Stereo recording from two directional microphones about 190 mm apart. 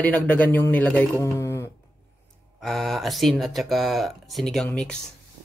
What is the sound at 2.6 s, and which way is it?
Speech, centre (ahead or behind).